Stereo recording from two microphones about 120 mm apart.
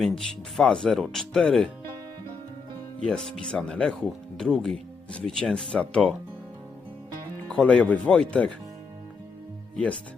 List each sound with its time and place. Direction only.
0.0 s speech: 5° left (ahead or behind)
3.1 s speech: 5° left (ahead or behind)
7.5 s speech: 10° left (ahead or behind)
9.7 s speech: 10° left (ahead or behind)